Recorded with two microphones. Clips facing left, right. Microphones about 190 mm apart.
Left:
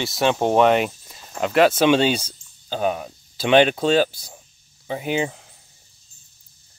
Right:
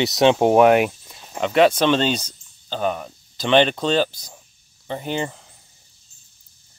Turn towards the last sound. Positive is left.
turn(degrees=5)  # may be behind; listen again after turning